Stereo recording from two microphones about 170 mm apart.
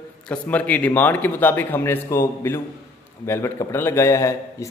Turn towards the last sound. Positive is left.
turn(degrees=20)  # may be behind; listen again after turning